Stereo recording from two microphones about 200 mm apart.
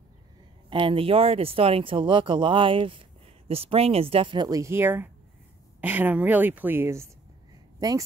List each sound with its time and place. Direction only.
0.7 s a woman's voice: 25° right (ahead or behind)